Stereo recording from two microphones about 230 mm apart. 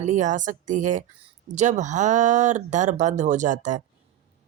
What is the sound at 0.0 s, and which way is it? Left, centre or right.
Speech, right.